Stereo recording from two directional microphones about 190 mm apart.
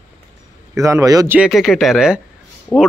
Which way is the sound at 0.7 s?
15° right (ahead or behind).